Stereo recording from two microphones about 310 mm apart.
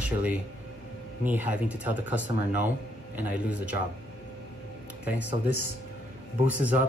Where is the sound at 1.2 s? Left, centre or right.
Centre.